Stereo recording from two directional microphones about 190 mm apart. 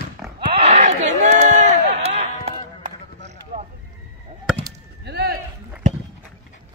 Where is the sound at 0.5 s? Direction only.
35° right (ahead or behind).